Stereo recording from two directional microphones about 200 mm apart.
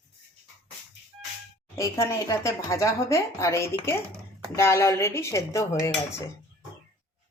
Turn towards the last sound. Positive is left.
turn(degrees=15)  # may be behind; listen again after turning